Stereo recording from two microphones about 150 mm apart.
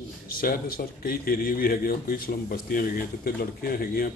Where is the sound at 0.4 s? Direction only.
75° left (ahead or behind).